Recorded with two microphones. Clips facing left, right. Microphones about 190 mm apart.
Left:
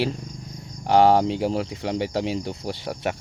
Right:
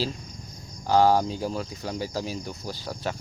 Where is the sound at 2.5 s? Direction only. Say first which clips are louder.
Left 5 dB; 25° left (ahead or behind).